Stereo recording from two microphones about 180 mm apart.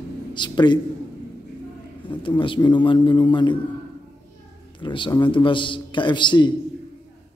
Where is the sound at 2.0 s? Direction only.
30° left (ahead or behind).